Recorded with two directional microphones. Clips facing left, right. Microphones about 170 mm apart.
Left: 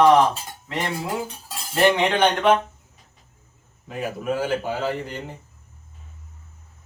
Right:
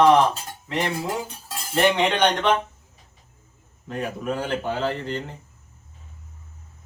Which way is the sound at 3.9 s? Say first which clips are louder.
Left 1 dB; 5° left (ahead or behind).